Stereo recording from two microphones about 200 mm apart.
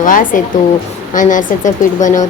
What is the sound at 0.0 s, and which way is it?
A woman's voice, 40° left (ahead or behind).